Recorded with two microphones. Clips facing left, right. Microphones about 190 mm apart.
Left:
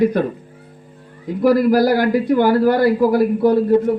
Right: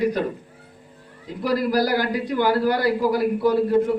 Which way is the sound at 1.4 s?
50° left (ahead or behind).